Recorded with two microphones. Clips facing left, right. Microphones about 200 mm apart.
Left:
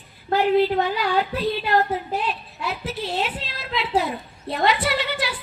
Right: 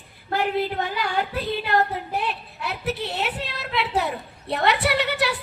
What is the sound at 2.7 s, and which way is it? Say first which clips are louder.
A woman's voice: even; 60° right (ahead or behind).